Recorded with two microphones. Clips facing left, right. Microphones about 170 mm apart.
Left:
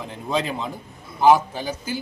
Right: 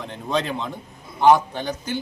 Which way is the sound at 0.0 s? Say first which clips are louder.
Even; 5° left (ahead or behind).